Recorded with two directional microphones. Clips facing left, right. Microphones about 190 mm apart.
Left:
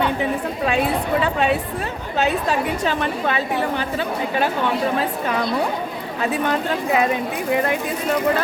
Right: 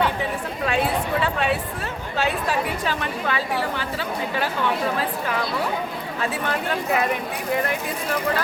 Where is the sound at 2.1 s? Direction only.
20° left (ahead or behind).